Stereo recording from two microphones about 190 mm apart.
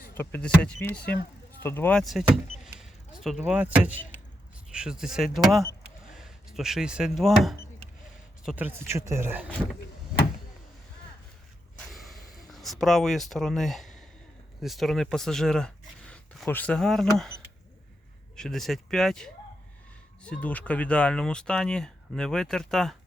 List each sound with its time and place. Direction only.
0.1 s speech: 10° left (ahead or behind); by 9.5 s 10° right (ahead or behind)
9.8 s door: 55° left (ahead or behind)
11.9 s a sound: centre (ahead or behind)
14.6 s speech: centre (ahead or behind)